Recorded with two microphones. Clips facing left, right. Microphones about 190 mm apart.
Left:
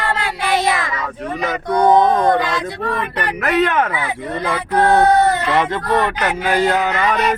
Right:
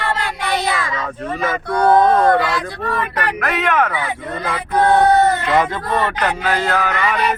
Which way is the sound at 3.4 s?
35° left (ahead or behind).